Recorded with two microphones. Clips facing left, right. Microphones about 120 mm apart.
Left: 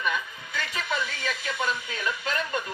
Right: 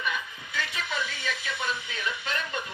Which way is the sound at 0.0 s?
45° left (ahead or behind).